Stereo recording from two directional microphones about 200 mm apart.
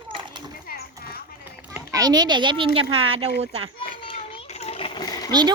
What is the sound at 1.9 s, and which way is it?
Speech, 20° right (ahead or behind).